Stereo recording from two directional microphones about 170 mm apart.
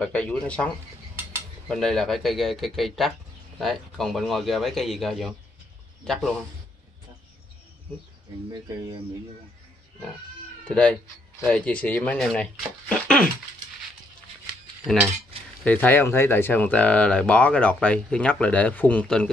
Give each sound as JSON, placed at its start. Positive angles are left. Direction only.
{"t": 0.0, "sound": "speech", "side_deg": 5}
{"t": 8.5, "sound": "speech", "side_deg": -25}
{"t": 10.7, "sound": "speech", "side_deg": 5}
{"t": 15.6, "sound": "speech", "side_deg": 10}